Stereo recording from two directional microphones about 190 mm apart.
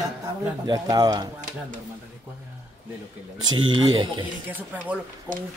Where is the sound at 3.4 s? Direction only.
90° right.